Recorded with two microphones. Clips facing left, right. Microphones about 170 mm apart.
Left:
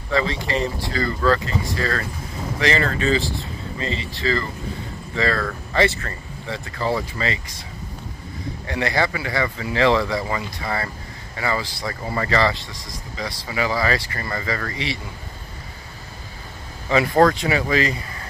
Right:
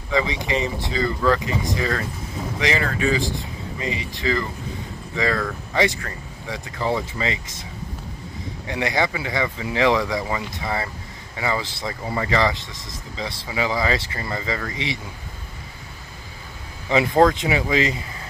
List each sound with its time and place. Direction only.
0.1 s speech: 15° right (ahead or behind)
8.6 s speech: 15° right (ahead or behind)
16.9 s speech: 15° right (ahead or behind)